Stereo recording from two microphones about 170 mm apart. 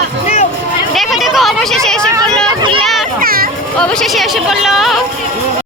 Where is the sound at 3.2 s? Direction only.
60° right (ahead or behind).